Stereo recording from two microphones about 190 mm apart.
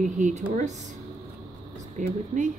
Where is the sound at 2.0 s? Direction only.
40° right (ahead or behind).